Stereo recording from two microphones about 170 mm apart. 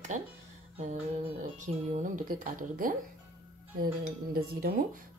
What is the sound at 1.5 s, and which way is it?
Speech, 45° right (ahead or behind).